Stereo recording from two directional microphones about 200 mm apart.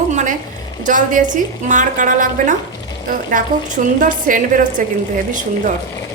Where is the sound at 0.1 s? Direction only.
35° right (ahead or behind).